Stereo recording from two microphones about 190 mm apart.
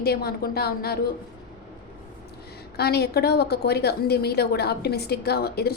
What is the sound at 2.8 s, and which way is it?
A woman's voice, 55° left (ahead or behind).